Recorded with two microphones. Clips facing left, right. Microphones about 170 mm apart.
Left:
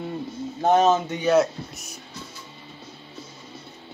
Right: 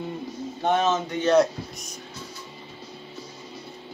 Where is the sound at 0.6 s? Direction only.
40° left (ahead or behind).